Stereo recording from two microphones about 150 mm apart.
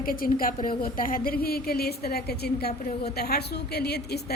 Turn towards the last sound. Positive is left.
turn(degrees=90)